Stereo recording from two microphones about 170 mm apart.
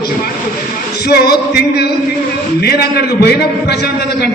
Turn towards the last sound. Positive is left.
turn(degrees=70)  # may be behind; listen again after turning